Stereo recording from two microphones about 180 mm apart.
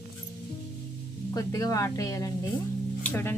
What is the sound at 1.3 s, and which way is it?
Speech, 20° left (ahead or behind).